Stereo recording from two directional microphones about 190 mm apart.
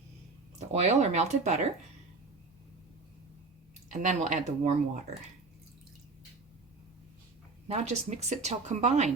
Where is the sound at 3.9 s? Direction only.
40° right (ahead or behind).